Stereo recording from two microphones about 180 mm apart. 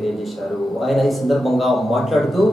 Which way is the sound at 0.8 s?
Centre (ahead or behind).